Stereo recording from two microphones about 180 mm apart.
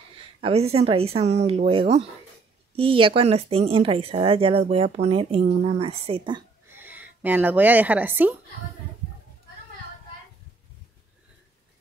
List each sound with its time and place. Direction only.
0.4 s speech: 35° right (ahead or behind)
6.8 s speech: 10° right (ahead or behind)